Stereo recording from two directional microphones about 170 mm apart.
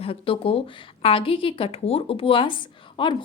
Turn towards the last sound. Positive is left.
turn(degrees=25)  # may be behind; listen again after turning